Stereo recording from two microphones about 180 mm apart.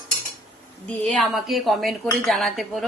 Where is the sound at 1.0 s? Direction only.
Centre (ahead or behind).